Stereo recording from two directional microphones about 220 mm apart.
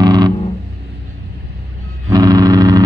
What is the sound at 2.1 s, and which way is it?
Vehicle, 15° right (ahead or behind).